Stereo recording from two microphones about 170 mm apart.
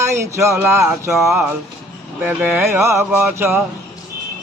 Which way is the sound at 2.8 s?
15° right (ahead or behind).